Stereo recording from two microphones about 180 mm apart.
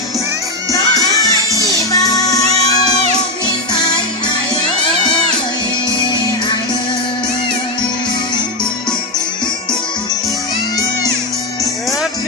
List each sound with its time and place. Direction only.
0.7 s music: 20° left (ahead or behind)
3.7 s music: 25° left (ahead or behind)